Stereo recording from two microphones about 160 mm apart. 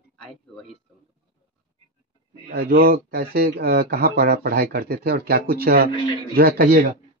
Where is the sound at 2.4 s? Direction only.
70° right (ahead or behind).